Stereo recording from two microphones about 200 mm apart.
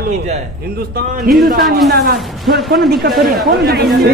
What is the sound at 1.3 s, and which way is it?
Speech, 50° right (ahead or behind).